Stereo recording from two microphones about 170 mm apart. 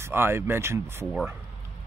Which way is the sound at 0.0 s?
15° right (ahead or behind).